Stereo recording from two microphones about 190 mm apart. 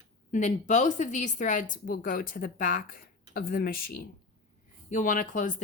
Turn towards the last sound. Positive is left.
turn(degrees=45)  # may be behind; listen again after turning